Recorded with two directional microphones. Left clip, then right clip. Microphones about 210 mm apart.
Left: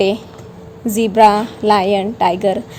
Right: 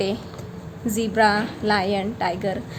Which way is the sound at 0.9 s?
25° left (ahead or behind).